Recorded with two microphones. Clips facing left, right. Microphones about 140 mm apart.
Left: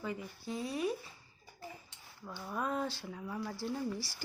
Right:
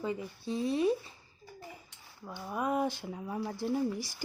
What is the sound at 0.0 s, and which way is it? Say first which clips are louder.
Speech: right 5 dB; 25° right (ahead or behind).